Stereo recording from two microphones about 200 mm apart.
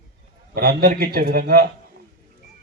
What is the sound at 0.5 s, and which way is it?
A man's voice, 50° right (ahead or behind).